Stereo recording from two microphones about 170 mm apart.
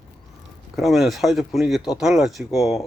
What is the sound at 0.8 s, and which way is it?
Speech, centre (ahead or behind).